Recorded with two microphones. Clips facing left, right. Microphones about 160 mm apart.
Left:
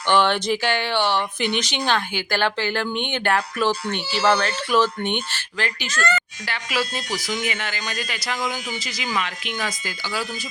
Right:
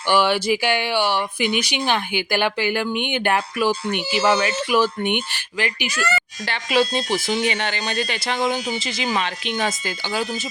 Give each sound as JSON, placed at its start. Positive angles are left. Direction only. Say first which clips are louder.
{"t": 0.1, "sound": "speech", "louder": "right 1 dB", "side_deg": -10}
{"t": 6.4, "sound": "speech", "louder": "right 6 dB", "side_deg": -30}